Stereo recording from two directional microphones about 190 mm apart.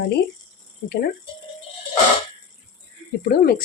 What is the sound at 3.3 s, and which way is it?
Speech, 50° left (ahead or behind).